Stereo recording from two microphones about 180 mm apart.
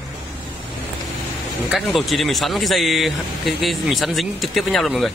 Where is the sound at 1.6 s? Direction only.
Centre (ahead or behind).